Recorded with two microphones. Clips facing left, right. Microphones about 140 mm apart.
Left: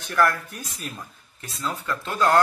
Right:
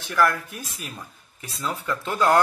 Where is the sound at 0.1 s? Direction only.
Centre (ahead or behind).